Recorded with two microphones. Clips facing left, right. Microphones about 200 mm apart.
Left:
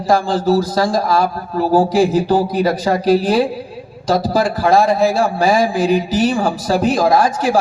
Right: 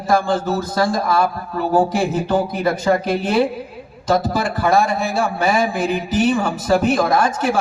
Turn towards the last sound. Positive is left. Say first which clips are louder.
# left 3 dB
turn(degrees=35)  # may be behind; listen again after turning